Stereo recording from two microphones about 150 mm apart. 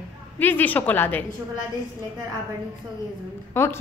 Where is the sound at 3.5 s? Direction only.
15° left (ahead or behind).